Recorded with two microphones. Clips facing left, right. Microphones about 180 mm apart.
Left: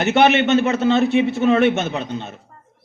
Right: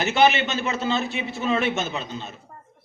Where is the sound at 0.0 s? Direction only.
60° left (ahead or behind).